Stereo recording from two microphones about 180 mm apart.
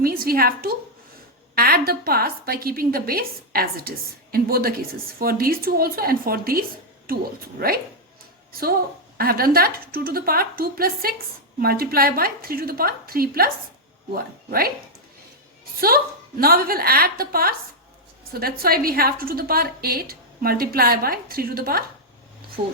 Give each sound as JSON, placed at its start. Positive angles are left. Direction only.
{"t": 0.0, "sound": "a woman's voice", "side_deg": -55}
{"t": 9.1, "sound": "a woman's voice", "side_deg": -55}
{"t": 16.4, "sound": "a woman's voice", "side_deg": -55}